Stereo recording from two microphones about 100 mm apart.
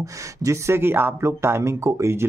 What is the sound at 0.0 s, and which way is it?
Speech, 30° right (ahead or behind).